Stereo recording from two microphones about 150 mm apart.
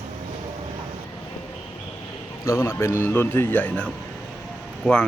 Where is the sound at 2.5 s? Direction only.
15° left (ahead or behind).